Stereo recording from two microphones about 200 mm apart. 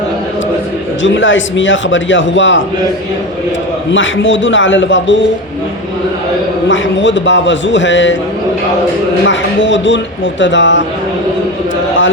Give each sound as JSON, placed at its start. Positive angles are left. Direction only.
{"t": 1.0, "sound": "a man's voice", "side_deg": 70}
{"t": 3.9, "sound": "a man's voice", "side_deg": 70}
{"t": 6.7, "sound": "a man's voice", "side_deg": 65}
{"t": 9.2, "sound": "a man's voice", "side_deg": 65}